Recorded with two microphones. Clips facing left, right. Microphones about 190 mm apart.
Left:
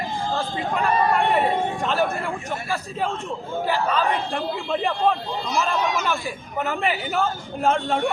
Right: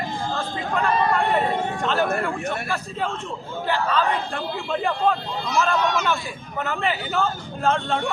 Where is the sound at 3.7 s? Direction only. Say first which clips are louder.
Right 1 dB; 10° left (ahead or behind).